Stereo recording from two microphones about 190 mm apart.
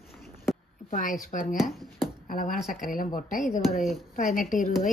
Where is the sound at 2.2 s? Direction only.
45° left (ahead or behind).